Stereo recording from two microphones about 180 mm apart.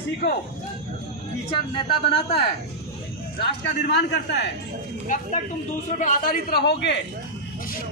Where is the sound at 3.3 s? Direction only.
65° left (ahead or behind).